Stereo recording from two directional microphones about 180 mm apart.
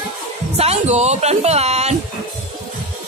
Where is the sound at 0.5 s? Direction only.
35° right (ahead or behind).